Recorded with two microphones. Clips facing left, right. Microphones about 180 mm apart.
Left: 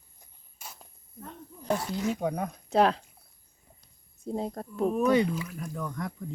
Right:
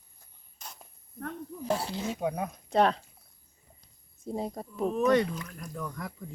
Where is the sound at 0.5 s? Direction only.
5° left (ahead or behind).